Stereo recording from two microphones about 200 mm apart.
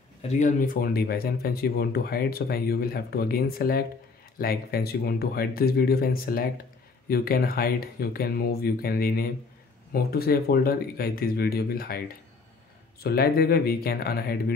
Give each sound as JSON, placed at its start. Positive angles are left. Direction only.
{"t": 0.2, "sound": "speech", "side_deg": 35}
{"t": 13.0, "sound": "speech", "side_deg": 50}